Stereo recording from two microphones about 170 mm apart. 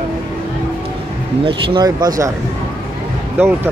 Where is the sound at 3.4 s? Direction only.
10° right (ahead or behind).